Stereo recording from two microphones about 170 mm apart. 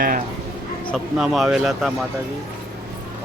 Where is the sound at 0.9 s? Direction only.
Centre (ahead or behind).